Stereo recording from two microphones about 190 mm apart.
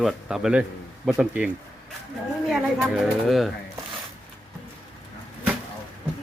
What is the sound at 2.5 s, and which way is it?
Speech, 5° right (ahead or behind).